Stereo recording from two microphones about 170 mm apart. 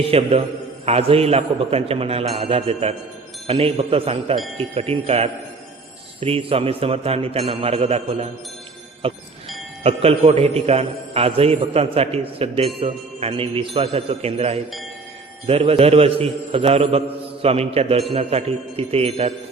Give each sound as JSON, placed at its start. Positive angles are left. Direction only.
{"t": 0.1, "sound": "a man's voice", "side_deg": -35}